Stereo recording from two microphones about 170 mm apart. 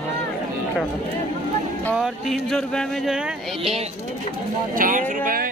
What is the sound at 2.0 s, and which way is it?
Speech, centre (ahead or behind).